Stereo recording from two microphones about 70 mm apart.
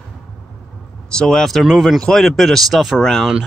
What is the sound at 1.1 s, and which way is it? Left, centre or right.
Speech, centre.